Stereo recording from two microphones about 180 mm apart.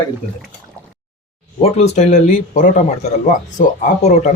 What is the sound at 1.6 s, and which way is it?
A man's voice, 35° left (ahead or behind).